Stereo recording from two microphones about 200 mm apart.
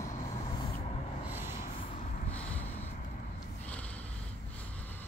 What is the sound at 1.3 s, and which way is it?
Snort, 10° right (ahead or behind).